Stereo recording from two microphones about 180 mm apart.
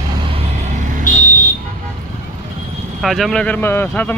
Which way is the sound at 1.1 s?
45° left (ahead or behind).